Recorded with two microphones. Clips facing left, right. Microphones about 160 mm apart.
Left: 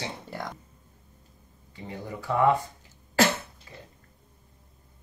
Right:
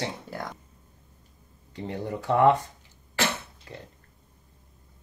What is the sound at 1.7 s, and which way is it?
Speech, 70° right (ahead or behind).